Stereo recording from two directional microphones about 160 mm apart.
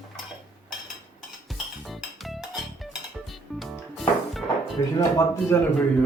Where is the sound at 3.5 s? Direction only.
Centre (ahead or behind).